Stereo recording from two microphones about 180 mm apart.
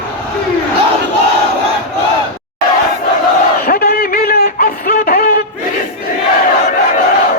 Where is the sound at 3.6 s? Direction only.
60° left (ahead or behind).